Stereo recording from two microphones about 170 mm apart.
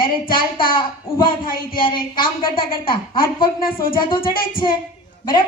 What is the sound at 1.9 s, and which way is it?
Speech, 55° left (ahead or behind).